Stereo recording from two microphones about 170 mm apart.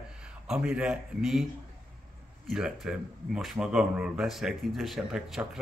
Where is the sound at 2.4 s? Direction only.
5° right (ahead or behind).